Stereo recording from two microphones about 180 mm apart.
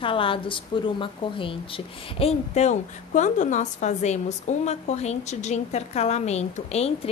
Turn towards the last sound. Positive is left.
turn(degrees=35)  # may be behind; listen again after turning